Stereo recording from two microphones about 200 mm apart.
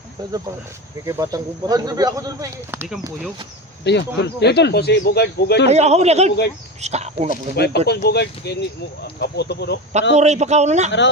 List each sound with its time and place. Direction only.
1.0 s speech: 15° right (ahead or behind)
3.8 s speech: 60° left (ahead or behind)
5.6 s a man's voice: 35° right (ahead or behind)
7.5 s speech: 55° left (ahead or behind)
10.2 s a man's voice: 35° right (ahead or behind)